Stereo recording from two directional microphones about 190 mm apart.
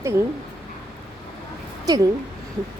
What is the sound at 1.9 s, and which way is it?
Speech, 20° right (ahead or behind).